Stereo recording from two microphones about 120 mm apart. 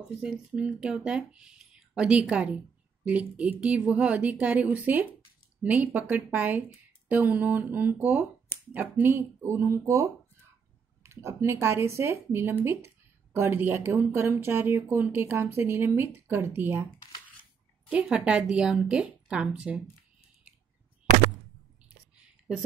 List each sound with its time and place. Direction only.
0.2 s speech: 10° right (ahead or behind)
17.8 s speech: 10° right (ahead or behind)